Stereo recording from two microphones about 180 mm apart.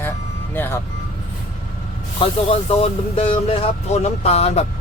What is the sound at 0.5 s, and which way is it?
Speech, 10° left (ahead or behind).